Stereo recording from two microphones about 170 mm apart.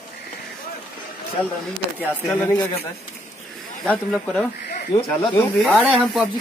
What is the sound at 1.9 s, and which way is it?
Speech, 10° left (ahead or behind).